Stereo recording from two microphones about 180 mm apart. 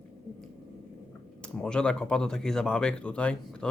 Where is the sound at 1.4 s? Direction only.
5° left (ahead or behind).